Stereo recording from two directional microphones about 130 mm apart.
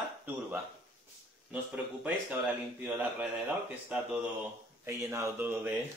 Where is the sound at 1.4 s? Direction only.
10° right (ahead or behind).